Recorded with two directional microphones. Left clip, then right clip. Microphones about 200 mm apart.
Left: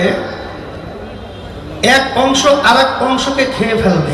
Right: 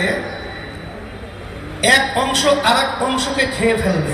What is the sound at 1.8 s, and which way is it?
A man's voice, 50° right (ahead or behind).